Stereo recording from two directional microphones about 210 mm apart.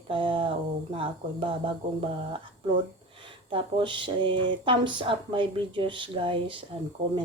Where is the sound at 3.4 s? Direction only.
25° right (ahead or behind).